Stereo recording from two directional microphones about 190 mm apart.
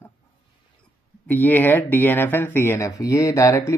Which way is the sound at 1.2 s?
10° left (ahead or behind).